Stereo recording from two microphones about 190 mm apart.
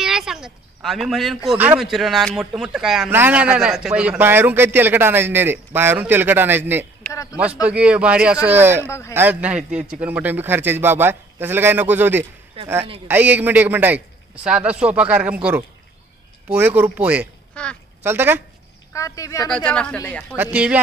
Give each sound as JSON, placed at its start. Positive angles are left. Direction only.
{"t": 0.0, "sound": "speech", "side_deg": 0}
{"t": 7.0, "sound": "a sound", "side_deg": 10}
{"t": 7.6, "sound": "speech", "side_deg": -5}
{"t": 17.6, "sound": "a woman's voice", "side_deg": 5}
{"t": 18.0, "sound": "speech", "side_deg": -10}
{"t": 18.9, "sound": "speech", "side_deg": 15}
{"t": 19.5, "sound": "speech", "side_deg": 5}
{"t": 20.5, "sound": "speech", "side_deg": -5}